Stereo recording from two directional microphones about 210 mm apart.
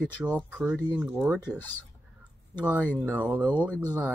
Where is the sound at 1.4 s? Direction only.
10° left (ahead or behind).